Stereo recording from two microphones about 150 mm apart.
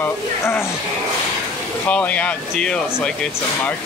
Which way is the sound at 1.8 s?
10° left (ahead or behind).